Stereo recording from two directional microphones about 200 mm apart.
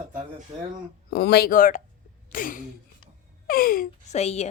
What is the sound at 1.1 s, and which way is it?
Speech, 50° left (ahead or behind).